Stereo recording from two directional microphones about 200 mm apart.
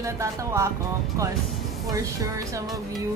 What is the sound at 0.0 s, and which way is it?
Speech, 15° right (ahead or behind).